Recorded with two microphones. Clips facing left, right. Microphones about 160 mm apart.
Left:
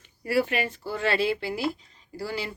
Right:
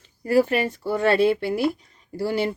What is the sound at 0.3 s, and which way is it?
Speech, 40° right (ahead or behind).